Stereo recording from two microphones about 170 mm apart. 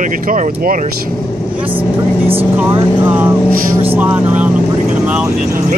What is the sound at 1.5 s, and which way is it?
Speech, 10° right (ahead or behind).